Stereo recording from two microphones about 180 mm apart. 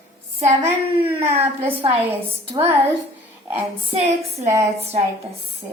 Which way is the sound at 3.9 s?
35° right (ahead or behind).